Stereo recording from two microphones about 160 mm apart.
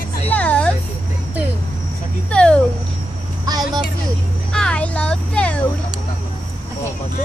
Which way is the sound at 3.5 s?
25° right (ahead or behind).